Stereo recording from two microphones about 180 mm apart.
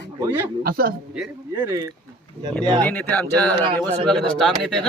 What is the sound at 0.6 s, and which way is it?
Speech, 55° right (ahead or behind).